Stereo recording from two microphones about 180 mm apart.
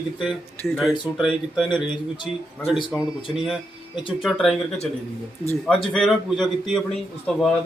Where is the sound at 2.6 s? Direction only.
25° left (ahead or behind).